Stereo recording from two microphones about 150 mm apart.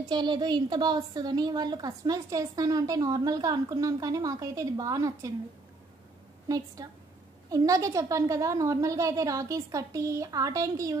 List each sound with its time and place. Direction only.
0.1 s a woman's voice: 30° right (ahead or behind)
6.5 s a woman's voice: 25° right (ahead or behind)